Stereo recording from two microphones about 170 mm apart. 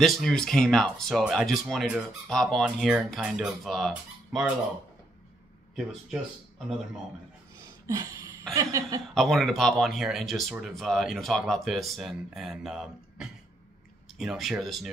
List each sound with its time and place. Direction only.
0.0 s speech: 5° left (ahead or behind)
5.8 s speech: centre (ahead or behind)
7.8 s a sound: 20° right (ahead or behind)
8.5 s chuckle: 20° right (ahead or behind)
9.0 s speech: centre (ahead or behind)